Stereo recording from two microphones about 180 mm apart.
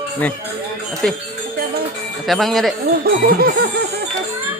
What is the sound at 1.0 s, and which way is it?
Speech, 5° left (ahead or behind).